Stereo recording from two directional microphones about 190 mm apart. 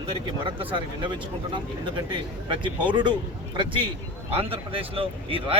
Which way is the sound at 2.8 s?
25° right (ahead or behind).